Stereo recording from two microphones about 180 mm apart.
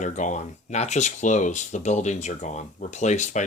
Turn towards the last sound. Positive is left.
turn(degrees=40)  # may be behind; listen again after turning